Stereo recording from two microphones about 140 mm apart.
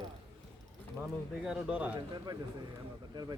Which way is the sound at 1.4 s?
10° right (ahead or behind).